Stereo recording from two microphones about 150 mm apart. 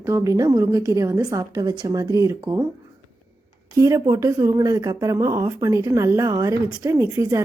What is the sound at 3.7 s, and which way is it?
Speech, 25° right (ahead or behind).